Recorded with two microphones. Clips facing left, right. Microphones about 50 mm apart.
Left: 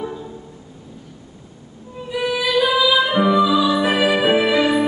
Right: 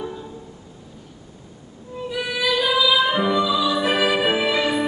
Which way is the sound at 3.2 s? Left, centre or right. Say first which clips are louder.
Left 5 dB; centre.